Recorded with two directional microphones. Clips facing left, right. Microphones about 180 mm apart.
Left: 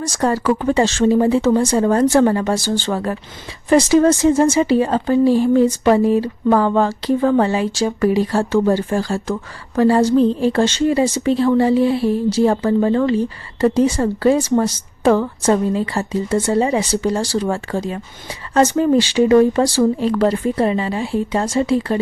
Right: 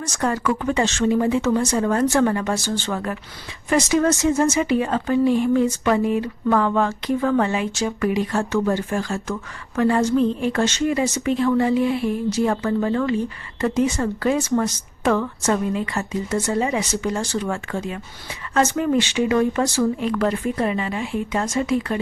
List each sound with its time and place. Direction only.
0.0 s speech: 35° left (ahead or behind)